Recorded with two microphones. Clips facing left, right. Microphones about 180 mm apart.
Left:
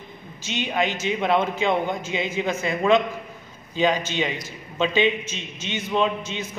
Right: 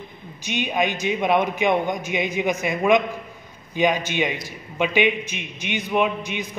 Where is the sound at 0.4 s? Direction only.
15° right (ahead or behind).